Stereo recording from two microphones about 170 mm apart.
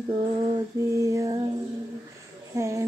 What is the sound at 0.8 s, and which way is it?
Female singing, 20° right (ahead or behind).